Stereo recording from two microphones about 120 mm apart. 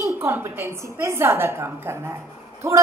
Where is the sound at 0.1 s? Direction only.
20° right (ahead or behind).